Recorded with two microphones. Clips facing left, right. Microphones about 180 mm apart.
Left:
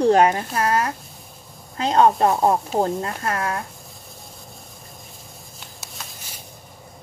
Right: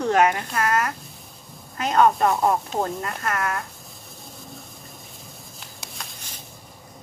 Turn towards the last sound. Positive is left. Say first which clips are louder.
# left 1 dB
turn(degrees=0)  # may be behind; listen again after turning